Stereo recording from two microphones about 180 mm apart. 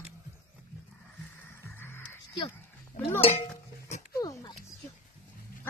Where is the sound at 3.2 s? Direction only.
35° left (ahead or behind).